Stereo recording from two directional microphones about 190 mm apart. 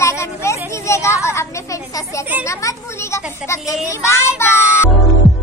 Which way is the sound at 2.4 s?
15° left (ahead or behind).